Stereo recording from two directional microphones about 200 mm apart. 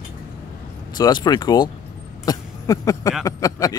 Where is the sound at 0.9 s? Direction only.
20° left (ahead or behind).